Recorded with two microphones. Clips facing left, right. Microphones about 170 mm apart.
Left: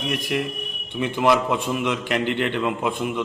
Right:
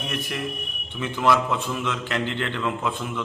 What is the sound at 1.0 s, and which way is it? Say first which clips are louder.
A man's voice: left 2 dB; 20° left (ahead or behind).